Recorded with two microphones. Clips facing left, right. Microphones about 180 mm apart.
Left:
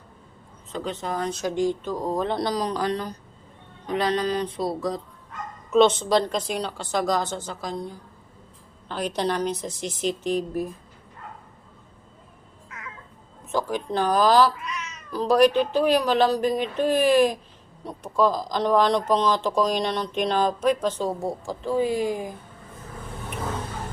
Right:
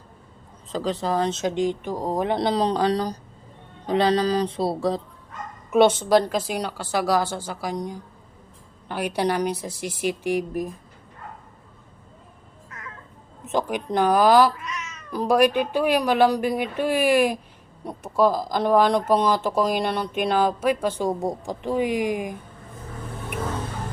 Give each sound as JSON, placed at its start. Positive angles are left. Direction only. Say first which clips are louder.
{"t": 0.7, "sound": "speech", "louder": "right 5 dB", "side_deg": -35}
{"t": 5.7, "sound": "speech", "louder": "right 1 dB", "side_deg": -10}
{"t": 13.4, "sound": "speech", "louder": "right 1 dB", "side_deg": -20}
{"t": 14.5, "sound": "cat", "louder": "even", "side_deg": 0}
{"t": 15.1, "sound": "speech", "louder": "left 1 dB", "side_deg": -10}